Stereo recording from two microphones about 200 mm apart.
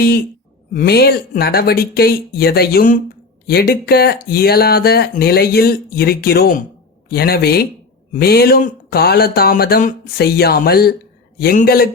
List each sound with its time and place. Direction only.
0.7 s speech: 50° left (ahead or behind)